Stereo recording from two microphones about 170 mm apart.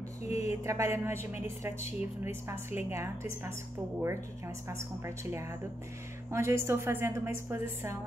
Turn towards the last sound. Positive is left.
turn(degrees=-15)  # may be behind; listen again after turning